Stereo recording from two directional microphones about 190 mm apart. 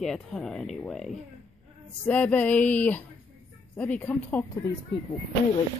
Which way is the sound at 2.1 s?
10° left (ahead or behind).